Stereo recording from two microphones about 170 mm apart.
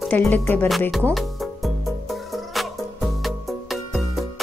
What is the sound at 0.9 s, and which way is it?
Music, centre (ahead or behind).